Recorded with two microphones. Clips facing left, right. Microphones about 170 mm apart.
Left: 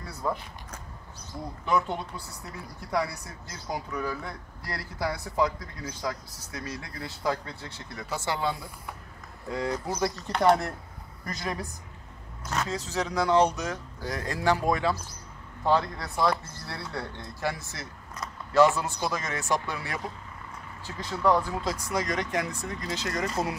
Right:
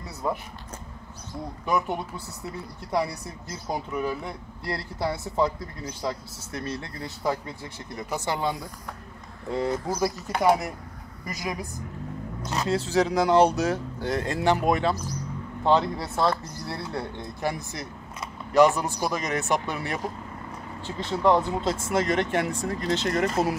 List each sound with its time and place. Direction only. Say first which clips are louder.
0.0 s a sound: right 2 dB; 20° right (ahead or behind)
1.7 s speech: right 1 dB; 15° right (ahead or behind)
7.2 s speech: right 2 dB; 15° right (ahead or behind)
9.8 s speech: right 3 dB; 10° right (ahead or behind)
12.4 s speech: right 4 dB; 30° right (ahead or behind)